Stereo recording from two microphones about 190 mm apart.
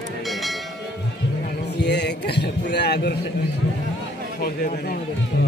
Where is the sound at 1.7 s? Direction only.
65° left (ahead or behind).